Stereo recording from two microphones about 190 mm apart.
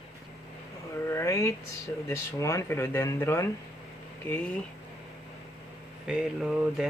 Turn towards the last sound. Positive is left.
turn(degrees=-5)  # may be behind; listen again after turning